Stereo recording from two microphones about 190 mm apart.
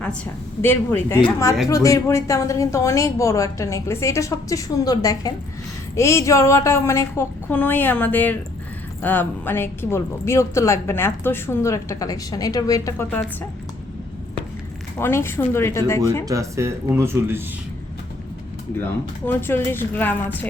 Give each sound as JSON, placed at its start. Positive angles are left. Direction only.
{"t": 0.6, "sound": "a woman's voice", "side_deg": 10}
{"t": 14.9, "sound": "a woman's voice", "side_deg": 15}
{"t": 16.2, "sound": "speech", "side_deg": -15}
{"t": 19.2, "sound": "a woman's voice", "side_deg": 10}